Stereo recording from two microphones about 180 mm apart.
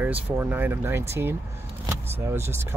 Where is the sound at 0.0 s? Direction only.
10° right (ahead or behind).